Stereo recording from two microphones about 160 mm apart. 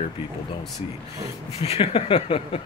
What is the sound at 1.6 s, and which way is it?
Speech, 40° left (ahead or behind).